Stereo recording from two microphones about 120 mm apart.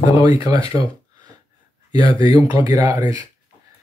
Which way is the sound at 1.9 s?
30° right (ahead or behind).